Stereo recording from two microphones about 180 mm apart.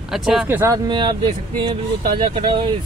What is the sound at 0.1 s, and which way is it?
Speech, centre (ahead or behind).